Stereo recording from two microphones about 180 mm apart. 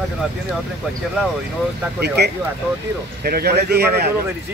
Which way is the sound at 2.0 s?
65° right (ahead or behind).